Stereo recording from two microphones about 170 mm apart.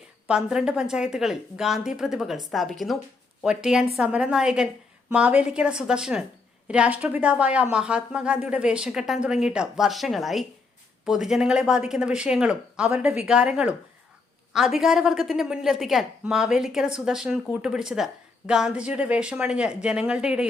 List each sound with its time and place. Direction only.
0.3 s a woman's voice: 5° right (ahead or behind)